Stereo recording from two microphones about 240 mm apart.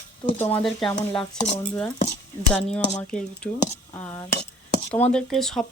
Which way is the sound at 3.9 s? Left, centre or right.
Centre.